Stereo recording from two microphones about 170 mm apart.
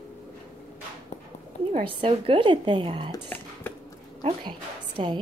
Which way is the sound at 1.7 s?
30° right (ahead or behind).